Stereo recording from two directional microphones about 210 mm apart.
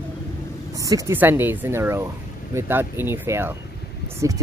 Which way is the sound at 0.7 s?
15° right (ahead or behind).